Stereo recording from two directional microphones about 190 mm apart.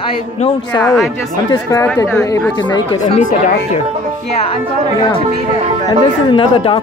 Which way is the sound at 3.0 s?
40° left (ahead or behind).